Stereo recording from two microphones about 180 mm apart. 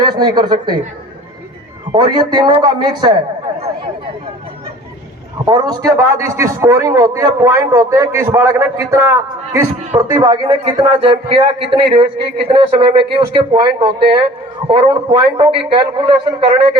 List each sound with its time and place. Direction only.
0.0 s speech: 25° right (ahead or behind)
1.9 s a man's voice: 25° right (ahead or behind)
5.5 s a man's voice: 20° right (ahead or behind)